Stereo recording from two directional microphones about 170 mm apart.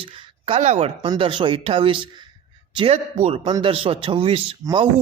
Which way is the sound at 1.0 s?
30° right (ahead or behind).